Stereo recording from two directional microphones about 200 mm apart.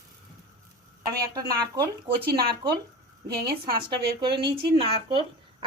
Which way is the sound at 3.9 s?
25° right (ahead or behind).